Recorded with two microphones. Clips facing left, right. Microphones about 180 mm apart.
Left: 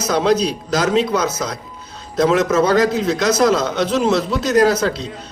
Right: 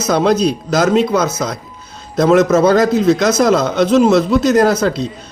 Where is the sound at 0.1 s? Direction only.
50° right (ahead or behind).